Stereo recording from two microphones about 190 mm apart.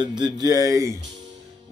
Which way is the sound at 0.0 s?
20° right (ahead or behind).